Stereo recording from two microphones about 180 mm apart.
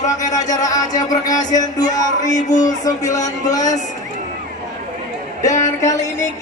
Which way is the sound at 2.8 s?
20° left (ahead or behind).